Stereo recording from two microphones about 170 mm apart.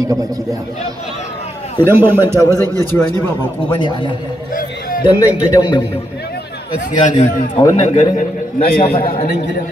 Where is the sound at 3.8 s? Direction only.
30° left (ahead or behind).